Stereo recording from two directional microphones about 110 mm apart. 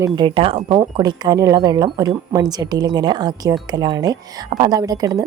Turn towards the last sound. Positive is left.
turn(degrees=-35)  # may be behind; listen again after turning